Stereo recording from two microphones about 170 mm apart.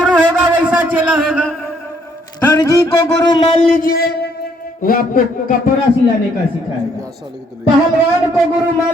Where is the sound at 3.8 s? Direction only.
65° left (ahead or behind).